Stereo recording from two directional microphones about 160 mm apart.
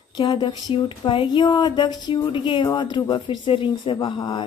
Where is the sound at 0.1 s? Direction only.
30° left (ahead or behind).